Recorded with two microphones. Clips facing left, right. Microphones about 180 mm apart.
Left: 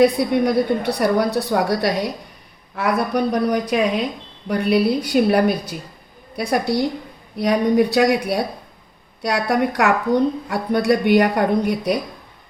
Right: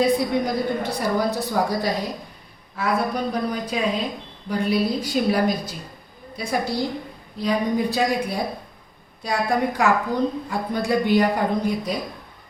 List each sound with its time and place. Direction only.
0.0 s a woman's voice: 65° left (ahead or behind)